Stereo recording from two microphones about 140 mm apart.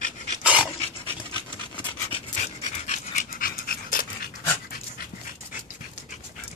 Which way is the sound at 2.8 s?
55° left (ahead or behind).